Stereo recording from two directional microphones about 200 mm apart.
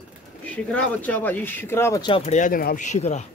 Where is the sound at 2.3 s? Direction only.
40° left (ahead or behind).